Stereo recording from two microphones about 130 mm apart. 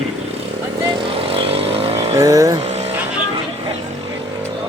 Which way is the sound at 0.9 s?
45° right (ahead or behind).